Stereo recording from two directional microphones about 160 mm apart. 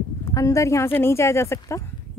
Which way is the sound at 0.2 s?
20° left (ahead or behind).